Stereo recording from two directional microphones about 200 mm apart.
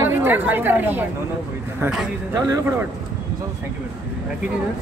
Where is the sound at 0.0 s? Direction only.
10° right (ahead or behind).